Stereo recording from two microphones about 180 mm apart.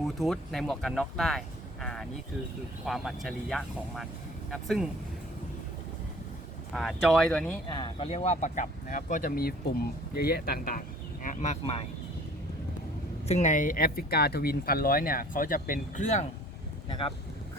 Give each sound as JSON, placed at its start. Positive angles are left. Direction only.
{"t": 0.0, "sound": "speech", "side_deg": 0}
{"t": 6.7, "sound": "speech", "side_deg": 0}
{"t": 7.7, "sound": "speech", "side_deg": 25}
{"t": 13.2, "sound": "speech", "side_deg": 40}